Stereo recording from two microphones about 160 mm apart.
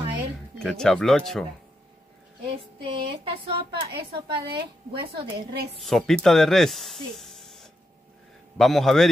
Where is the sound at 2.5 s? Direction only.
35° right (ahead or behind).